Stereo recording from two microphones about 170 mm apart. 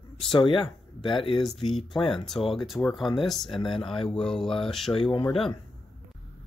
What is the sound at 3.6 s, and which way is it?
Speech, 30° left (ahead or behind).